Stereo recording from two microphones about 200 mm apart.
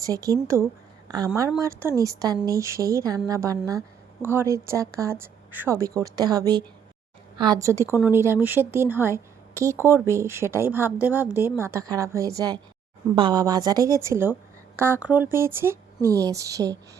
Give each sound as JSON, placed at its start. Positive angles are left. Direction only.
{"t": 0.0, "sound": "a woman's voice", "side_deg": -15}